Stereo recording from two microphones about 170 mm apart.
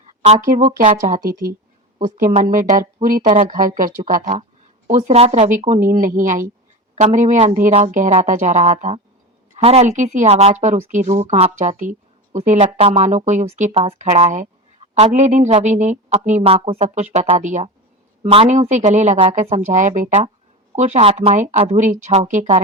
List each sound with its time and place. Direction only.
0.0 s a woman's voice: 40° right (ahead or behind)
1.3 s a woman's voice: 15° right (ahead or behind)
2.0 s a woman's voice: 50° right (ahead or behind)
18.2 s a woman's voice: 35° right (ahead or behind)